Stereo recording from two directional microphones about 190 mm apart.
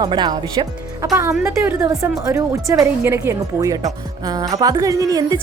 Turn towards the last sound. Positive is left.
turn(degrees=-20)  # may be behind; listen again after turning